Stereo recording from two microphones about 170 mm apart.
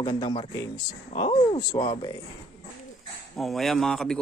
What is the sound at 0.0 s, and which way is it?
Speech, 25° left (ahead or behind).